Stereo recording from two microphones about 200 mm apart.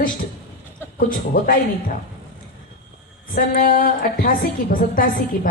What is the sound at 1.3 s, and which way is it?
Speech, 45° left (ahead or behind).